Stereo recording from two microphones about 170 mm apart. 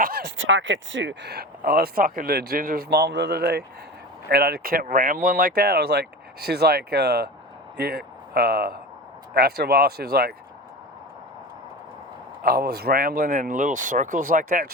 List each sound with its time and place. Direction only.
0.0 s a sound: 55° right (ahead or behind)
0.7 s speech: 90° right; by 10.3 s 65° right (ahead or behind)
12.4 s speech: 60° right (ahead or behind)